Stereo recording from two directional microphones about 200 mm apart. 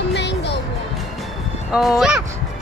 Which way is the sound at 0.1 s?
60° left (ahead or behind).